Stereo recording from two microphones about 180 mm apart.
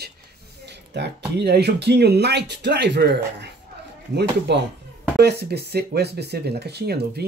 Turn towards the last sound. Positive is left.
turn(degrees=-65)  # may be behind; listen again after turning